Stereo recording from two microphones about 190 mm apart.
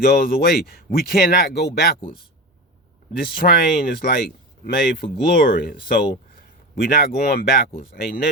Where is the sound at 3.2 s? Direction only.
50° left (ahead or behind).